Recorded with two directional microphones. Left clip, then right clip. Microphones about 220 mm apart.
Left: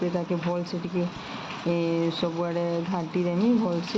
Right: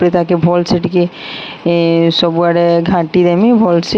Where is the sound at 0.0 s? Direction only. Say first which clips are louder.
Right 17 dB; 50° right (ahead or behind).